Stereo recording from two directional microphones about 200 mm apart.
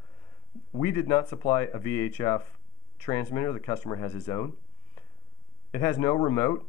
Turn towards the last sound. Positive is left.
turn(degrees=15)  # may be behind; listen again after turning